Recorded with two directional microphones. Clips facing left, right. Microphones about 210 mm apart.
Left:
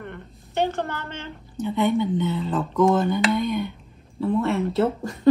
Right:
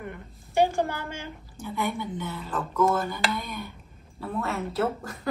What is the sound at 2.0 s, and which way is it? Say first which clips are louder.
Speech: left 10 dB; 20° left (ahead or behind).